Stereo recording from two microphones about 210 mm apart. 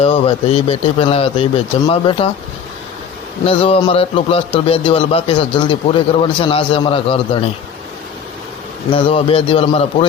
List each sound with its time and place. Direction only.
0.0 s a man's voice: 30° left (ahead or behind)
3.4 s a man's voice: 25° left (ahead or behind)
8.9 s a man's voice: 25° left (ahead or behind)